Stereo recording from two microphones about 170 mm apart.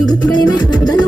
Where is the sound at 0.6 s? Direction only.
25° left (ahead or behind).